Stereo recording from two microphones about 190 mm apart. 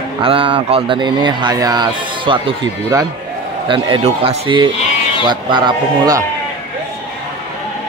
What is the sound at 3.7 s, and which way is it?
Speech, 25° right (ahead or behind).